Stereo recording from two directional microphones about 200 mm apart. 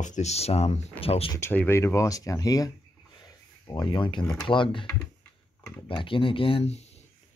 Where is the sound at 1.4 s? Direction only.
10° left (ahead or behind).